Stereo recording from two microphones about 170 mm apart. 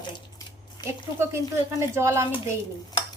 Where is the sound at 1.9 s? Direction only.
15° right (ahead or behind).